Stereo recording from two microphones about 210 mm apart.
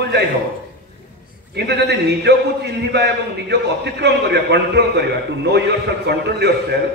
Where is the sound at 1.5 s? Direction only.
50° right (ahead or behind).